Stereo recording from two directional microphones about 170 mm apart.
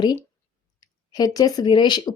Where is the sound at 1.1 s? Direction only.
20° left (ahead or behind).